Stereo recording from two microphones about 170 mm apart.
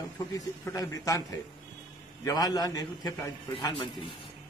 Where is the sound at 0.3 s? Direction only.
20° left (ahead or behind).